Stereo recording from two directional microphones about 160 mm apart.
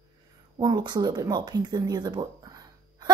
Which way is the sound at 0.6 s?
30° right (ahead or behind).